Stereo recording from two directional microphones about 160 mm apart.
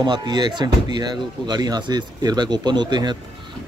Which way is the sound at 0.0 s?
25° right (ahead or behind).